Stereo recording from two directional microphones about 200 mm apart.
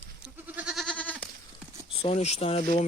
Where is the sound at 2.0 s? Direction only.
30° left (ahead or behind).